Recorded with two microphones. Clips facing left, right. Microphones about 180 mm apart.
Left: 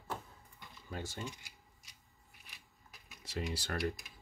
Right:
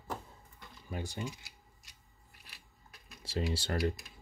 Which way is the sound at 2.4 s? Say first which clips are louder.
Right 2 dB; centre (ahead or behind).